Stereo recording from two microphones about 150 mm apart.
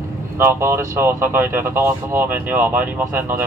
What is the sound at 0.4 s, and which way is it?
A man's voice, 15° right (ahead or behind).